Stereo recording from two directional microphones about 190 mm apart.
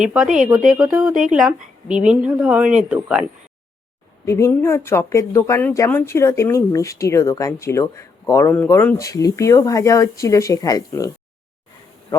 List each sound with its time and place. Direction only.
0.0 s a woman's voice: 5° right (ahead or behind)
4.3 s speech: 15° left (ahead or behind)